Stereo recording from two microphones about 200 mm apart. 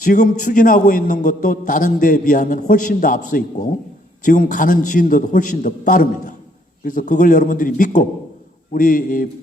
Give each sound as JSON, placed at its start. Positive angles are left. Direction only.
{"t": 0.0, "sound": "a man's voice", "side_deg": 40}